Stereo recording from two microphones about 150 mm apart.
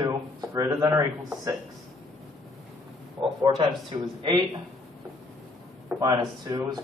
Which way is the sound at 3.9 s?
30° right (ahead or behind).